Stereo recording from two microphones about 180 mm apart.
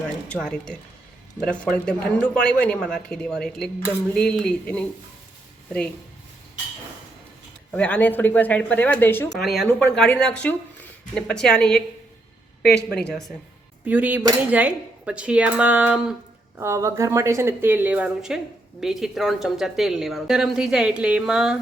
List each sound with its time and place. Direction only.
0.3 s speech: 5° left (ahead or behind)
7.7 s speech: 10° left (ahead or behind)
9.4 s speech: centre (ahead or behind)
12.7 s speech: 60° left (ahead or behind)
13.8 s speech: 10° right (ahead or behind)